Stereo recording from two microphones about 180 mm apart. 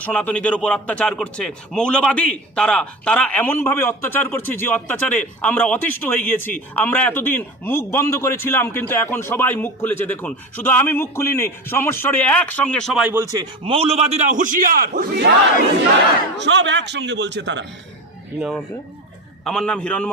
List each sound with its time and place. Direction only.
0.0 s a man's voice: 5° left (ahead or behind)
13.3 s a man's voice: 25° right (ahead or behind); by 15.3 s 60° right (ahead or behind)
16.4 s a man's voice: 80° right
19.5 s a man's voice: 5° left (ahead or behind)